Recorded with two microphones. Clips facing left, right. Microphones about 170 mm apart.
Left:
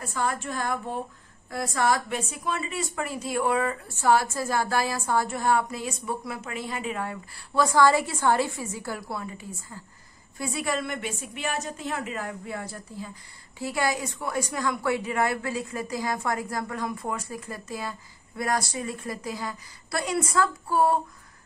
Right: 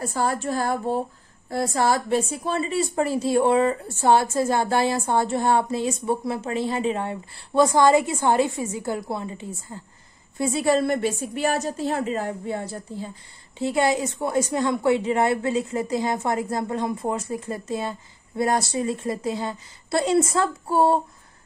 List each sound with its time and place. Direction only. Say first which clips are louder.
0.0 s a woman's voice: right 5 dB; 35° right (ahead or behind)